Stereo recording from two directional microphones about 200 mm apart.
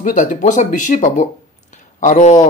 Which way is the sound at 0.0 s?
40° left (ahead or behind).